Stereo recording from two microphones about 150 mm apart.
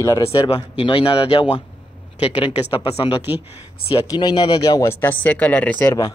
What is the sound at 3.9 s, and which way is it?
Speech, 25° left (ahead or behind).